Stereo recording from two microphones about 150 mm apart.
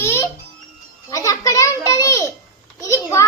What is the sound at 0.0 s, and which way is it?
Babbling, 15° left (ahead or behind).